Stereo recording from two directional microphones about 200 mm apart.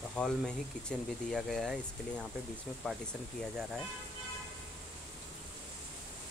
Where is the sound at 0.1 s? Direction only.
5° left (ahead or behind).